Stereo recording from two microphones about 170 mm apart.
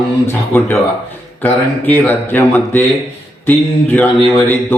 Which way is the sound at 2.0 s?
10° left (ahead or behind).